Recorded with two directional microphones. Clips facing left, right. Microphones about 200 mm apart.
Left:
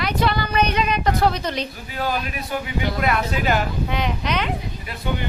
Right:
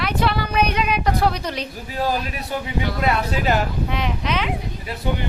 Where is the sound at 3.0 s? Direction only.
30° right (ahead or behind).